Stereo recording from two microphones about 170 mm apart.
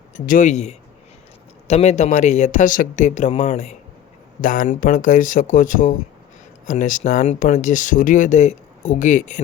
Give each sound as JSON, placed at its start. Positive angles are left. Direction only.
{"t": 0.3, "sound": "speech", "side_deg": 50}